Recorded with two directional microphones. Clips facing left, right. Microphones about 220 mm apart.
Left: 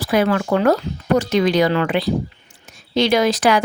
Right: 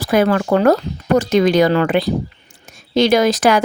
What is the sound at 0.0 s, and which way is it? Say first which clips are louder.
A woman's voice: right 3 dB; 45° right (ahead or behind).